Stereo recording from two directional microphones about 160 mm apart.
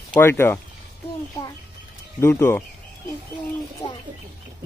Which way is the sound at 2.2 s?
15° left (ahead or behind).